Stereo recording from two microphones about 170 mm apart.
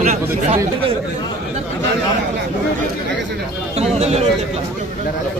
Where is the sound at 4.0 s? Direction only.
40° right (ahead or behind).